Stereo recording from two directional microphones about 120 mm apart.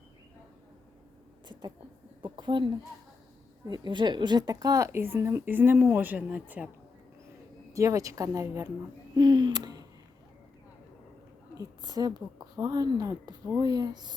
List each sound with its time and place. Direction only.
2.2 s a woman's voice: 40° right (ahead or behind); by 6.7 s 10° right (ahead or behind)
7.7 s a woman's voice: 25° right (ahead or behind)
9.1 s a sound: 40° right (ahead or behind)
11.5 s a woman's voice: 35° right (ahead or behind)